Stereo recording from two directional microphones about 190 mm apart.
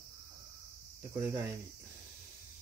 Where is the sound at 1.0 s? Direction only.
15° right (ahead or behind).